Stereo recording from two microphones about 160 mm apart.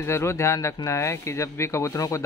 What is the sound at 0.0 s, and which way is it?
A man's voice, 15° left (ahead or behind).